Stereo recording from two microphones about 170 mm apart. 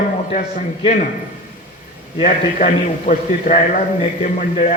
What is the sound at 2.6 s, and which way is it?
A man's voice, 50° left (ahead or behind).